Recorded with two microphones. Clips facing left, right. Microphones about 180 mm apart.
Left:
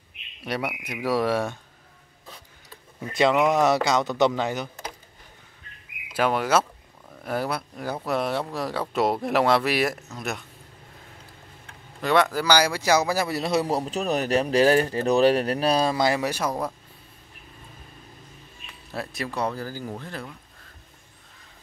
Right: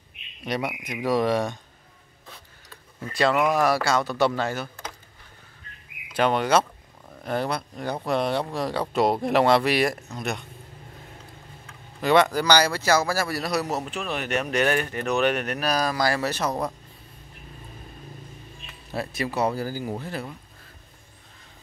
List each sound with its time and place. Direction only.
1.0 s speech: 5° left (ahead or behind)
3.0 s a man's voice: 20° left (ahead or behind)
6.1 s speech: 5° left (ahead or behind)
12.0 s a man's voice: centre (ahead or behind)
18.9 s speech: centre (ahead or behind)